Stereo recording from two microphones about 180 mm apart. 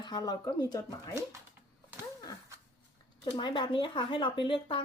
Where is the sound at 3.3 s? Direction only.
25° left (ahead or behind).